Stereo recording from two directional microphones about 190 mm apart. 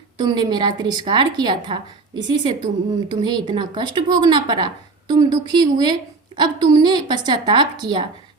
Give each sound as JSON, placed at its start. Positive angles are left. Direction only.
{"t": 0.2, "sound": "a woman's voice", "side_deg": -20}